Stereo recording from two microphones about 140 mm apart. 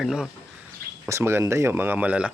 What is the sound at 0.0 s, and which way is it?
Speech, 5° right (ahead or behind).